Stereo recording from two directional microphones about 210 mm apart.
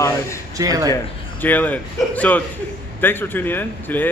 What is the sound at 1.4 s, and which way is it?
A man's voice, 10° left (ahead or behind).